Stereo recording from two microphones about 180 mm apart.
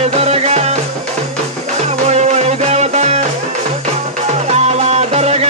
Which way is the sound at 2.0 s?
40° right (ahead or behind).